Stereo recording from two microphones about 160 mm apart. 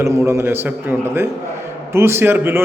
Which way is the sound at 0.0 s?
20° right (ahead or behind).